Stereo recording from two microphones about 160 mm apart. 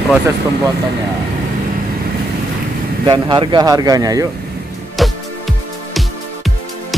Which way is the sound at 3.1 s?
30° right (ahead or behind).